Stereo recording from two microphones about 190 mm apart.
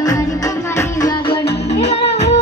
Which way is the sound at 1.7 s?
35° left (ahead or behind).